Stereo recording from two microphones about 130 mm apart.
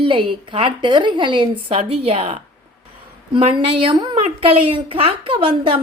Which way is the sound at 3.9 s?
40° right (ahead or behind).